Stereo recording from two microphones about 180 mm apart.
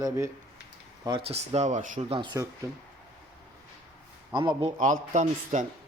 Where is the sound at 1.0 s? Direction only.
30° right (ahead or behind).